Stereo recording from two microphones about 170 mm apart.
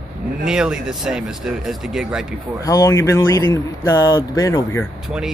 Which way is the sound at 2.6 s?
20° left (ahead or behind).